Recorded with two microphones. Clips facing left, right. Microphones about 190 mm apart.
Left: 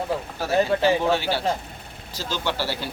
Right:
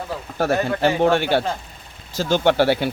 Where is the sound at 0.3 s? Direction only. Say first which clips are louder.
Right 2 dB; 55° right (ahead or behind).